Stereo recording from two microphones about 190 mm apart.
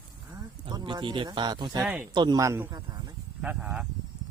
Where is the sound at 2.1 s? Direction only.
25° right (ahead or behind).